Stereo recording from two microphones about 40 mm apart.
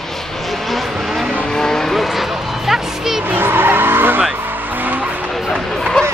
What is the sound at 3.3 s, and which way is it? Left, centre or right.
Vehicle, right.